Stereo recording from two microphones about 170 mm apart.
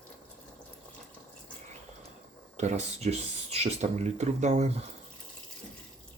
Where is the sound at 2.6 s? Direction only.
40° right (ahead or behind).